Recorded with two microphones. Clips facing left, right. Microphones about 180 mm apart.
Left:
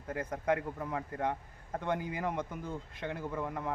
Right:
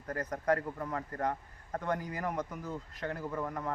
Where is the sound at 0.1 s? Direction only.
5° left (ahead or behind).